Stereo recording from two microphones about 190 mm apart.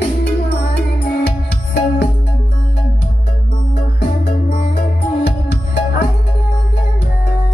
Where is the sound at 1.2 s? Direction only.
60° left (ahead or behind).